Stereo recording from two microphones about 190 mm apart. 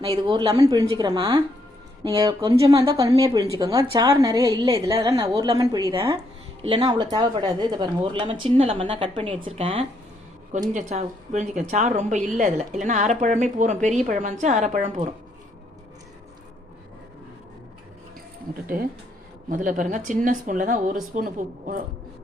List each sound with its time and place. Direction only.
0.2 s a woman's voice: 25° right (ahead or behind); by 15.1 s 45° right (ahead or behind)
19.5 s speech: 45° right (ahead or behind)